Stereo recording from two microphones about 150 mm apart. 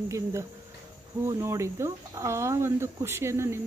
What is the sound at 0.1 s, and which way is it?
Speech, 20° right (ahead or behind).